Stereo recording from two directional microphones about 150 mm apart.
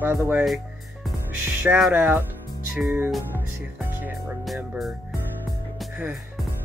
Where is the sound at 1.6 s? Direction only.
10° right (ahead or behind).